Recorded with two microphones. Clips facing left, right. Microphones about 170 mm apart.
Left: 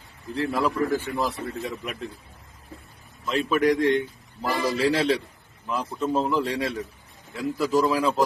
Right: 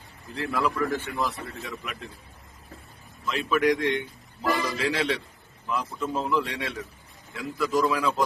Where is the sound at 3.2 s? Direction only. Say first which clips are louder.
Left 2 dB; 35° left (ahead or behind).